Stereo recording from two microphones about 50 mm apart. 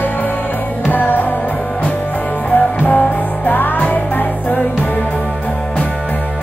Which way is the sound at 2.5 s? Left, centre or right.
Left.